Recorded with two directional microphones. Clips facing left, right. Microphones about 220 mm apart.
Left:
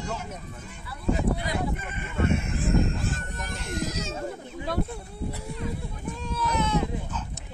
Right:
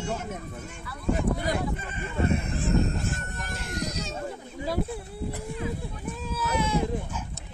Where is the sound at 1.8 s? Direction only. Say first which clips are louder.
Even; 35° right (ahead or behind).